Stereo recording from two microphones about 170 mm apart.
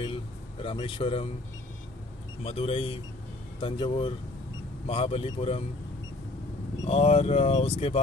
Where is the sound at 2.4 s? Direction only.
35° left (ahead or behind).